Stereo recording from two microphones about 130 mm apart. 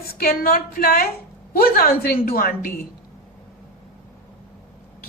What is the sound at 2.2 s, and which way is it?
Speech, 90° left.